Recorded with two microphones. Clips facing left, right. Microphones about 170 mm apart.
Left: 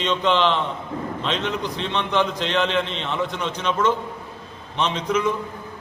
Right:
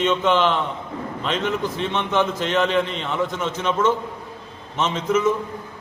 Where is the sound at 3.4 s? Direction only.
10° right (ahead or behind).